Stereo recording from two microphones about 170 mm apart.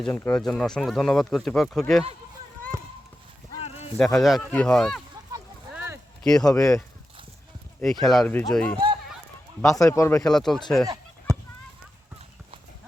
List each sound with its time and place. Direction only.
0.0 s speech: 5° left (ahead or behind)
3.6 s a sound: 35° left (ahead or behind)
3.9 s speech: centre (ahead or behind)
5.7 s a sound: 15° right (ahead or behind)
6.2 s speech: 5° left (ahead or behind)
6.5 s speech: 20° left (ahead or behind)
8.0 s speech: centre (ahead or behind)
9.6 s speech: 20° left (ahead or behind)
10.2 s speech: 5° left (ahead or behind)
10.8 s a sound: 20° right (ahead or behind)